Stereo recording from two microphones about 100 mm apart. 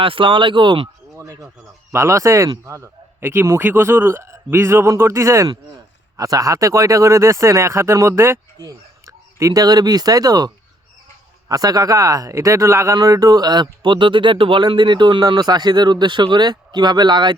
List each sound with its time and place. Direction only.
0.0 s speech: 60° right (ahead or behind)
1.1 s a sound: 35° right (ahead or behind)
1.9 s a man's voice: 30° right (ahead or behind)
8.5 s speech: 35° right (ahead or behind)